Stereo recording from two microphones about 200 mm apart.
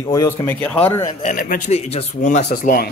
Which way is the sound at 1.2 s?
45° left (ahead or behind).